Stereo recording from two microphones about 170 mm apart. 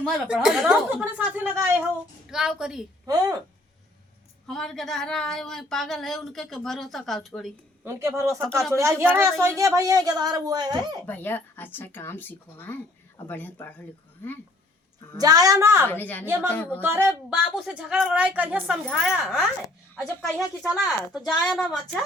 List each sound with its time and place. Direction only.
0.0 s a woman's voice: 5° right (ahead or behind)
2.3 s speech: 5° right (ahead or behind)
3.1 s speech: 20° right (ahead or behind)
4.4 s speech: centre (ahead or behind)
7.9 s a woman's voice: 15° right (ahead or behind)
8.3 s speech: 5° left (ahead or behind)
8.7 s a woman's voice: 15° right (ahead or behind)
11.0 s speech: 10° left (ahead or behind)
15.2 s speech: 20° right (ahead or behind)
15.9 s speech: 10° left (ahead or behind)
16.2 s a woman's voice: 15° right (ahead or behind)
16.5 s speech: 10° left (ahead or behind)
16.8 s a woman's voice: 10° right (ahead or behind); by 21.9 s 5° left (ahead or behind)